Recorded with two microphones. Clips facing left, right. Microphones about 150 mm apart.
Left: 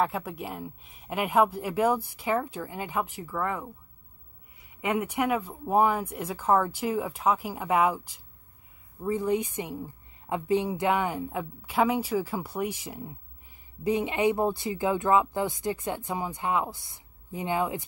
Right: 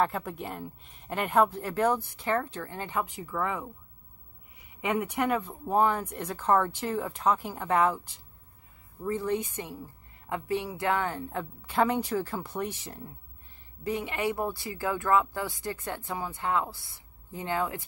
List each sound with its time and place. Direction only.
0.0 s speech: 5° left (ahead or behind)
4.8 s speech: 10° left (ahead or behind)